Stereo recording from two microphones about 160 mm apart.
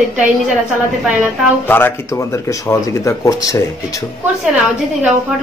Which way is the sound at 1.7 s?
15° left (ahead or behind).